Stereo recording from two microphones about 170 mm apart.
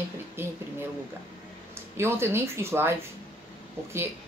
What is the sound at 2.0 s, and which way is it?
Speech, 15° right (ahead or behind).